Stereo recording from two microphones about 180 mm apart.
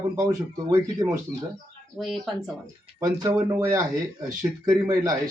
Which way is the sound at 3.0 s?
20° right (ahead or behind).